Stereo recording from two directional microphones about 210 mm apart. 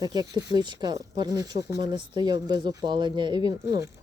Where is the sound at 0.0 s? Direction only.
20° right (ahead or behind).